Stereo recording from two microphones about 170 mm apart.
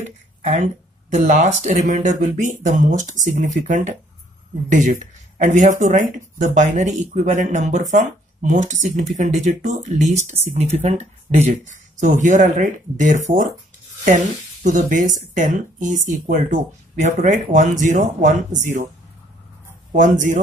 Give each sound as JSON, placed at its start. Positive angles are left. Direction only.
{"t": 1.1, "sound": "speech", "side_deg": -45}
{"t": 19.9, "sound": "speech", "side_deg": -50}